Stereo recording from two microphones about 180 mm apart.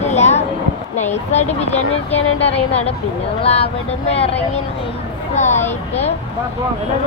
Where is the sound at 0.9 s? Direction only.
40° left (ahead or behind).